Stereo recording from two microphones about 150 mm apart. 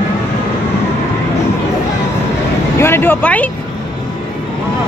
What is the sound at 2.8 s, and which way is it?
Speech, 15° left (ahead or behind).